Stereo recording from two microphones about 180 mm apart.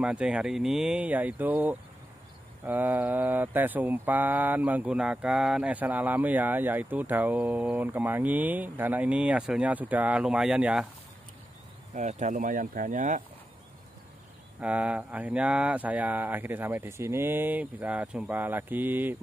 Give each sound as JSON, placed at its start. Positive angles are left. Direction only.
{"t": 0.0, "sound": "speech", "side_deg": -5}
{"t": 11.9, "sound": "speech", "side_deg": -40}
{"t": 14.6, "sound": "speech", "side_deg": -10}